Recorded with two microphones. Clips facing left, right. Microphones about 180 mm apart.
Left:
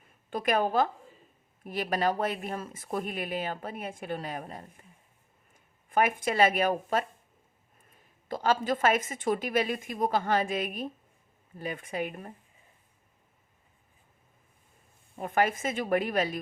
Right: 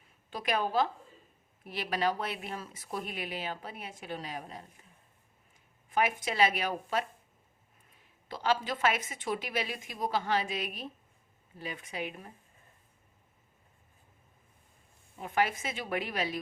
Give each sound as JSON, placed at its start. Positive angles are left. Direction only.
{"t": 0.3, "sound": "speech", "side_deg": 50}
{"t": 5.9, "sound": "speech", "side_deg": 50}
{"t": 8.3, "sound": "speech", "side_deg": 45}
{"t": 15.2, "sound": "speech", "side_deg": 50}